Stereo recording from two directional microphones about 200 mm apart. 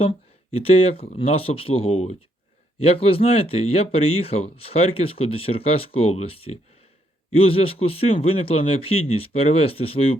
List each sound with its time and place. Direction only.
0.0 s speech: 30° left (ahead or behind)